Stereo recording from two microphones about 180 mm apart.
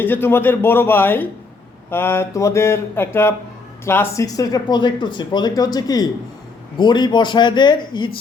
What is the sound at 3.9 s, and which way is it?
A man's voice, 15° left (ahead or behind).